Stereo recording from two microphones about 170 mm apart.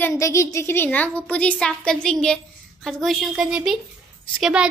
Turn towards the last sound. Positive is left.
turn(degrees=-5)  # may be behind; listen again after turning